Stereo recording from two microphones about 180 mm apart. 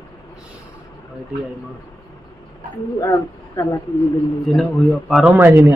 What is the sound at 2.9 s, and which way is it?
Speech, 20° left (ahead or behind).